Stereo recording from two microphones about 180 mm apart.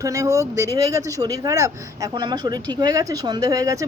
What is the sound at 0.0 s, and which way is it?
Speech, 15° right (ahead or behind).